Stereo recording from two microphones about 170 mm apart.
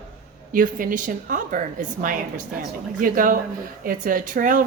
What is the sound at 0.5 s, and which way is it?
A woman's voice, 55° right (ahead or behind).